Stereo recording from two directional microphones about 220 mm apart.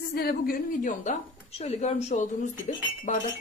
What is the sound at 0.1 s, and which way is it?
Speech, 45° left (ahead or behind).